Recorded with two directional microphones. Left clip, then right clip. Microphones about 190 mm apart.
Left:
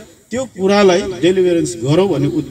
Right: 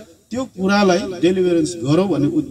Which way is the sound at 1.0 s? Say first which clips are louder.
Left 4 dB; 55° right (ahead or behind).